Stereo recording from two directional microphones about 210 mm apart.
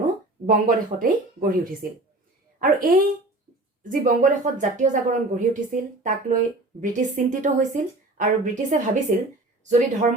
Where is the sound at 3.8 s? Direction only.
40° right (ahead or behind).